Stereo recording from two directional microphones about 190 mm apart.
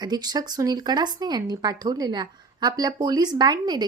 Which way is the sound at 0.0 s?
20° right (ahead or behind).